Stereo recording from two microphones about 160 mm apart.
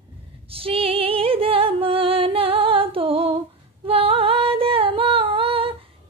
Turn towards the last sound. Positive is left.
turn(degrees=-35)  # may be behind; listen again after turning